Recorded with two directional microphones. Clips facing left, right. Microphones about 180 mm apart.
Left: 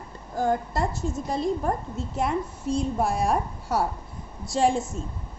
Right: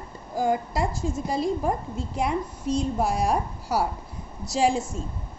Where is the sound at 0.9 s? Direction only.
90° right.